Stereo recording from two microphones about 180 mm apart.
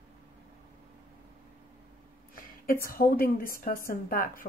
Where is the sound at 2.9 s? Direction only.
55° left (ahead or behind).